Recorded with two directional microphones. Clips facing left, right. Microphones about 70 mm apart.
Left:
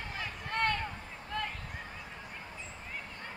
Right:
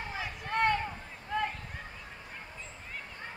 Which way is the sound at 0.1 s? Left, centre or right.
Centre.